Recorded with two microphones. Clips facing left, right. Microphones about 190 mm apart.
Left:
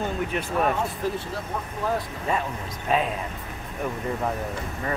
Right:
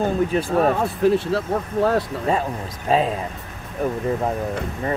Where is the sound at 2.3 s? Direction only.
30° right (ahead or behind).